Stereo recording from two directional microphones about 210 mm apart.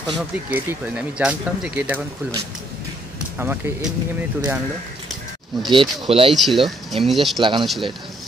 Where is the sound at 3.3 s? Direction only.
10° right (ahead or behind).